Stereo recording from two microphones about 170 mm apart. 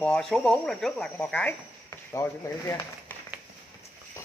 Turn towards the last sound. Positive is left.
turn(degrees=15)  # may be behind; listen again after turning